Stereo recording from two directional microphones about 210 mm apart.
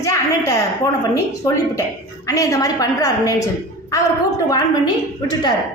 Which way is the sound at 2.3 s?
15° left (ahead or behind).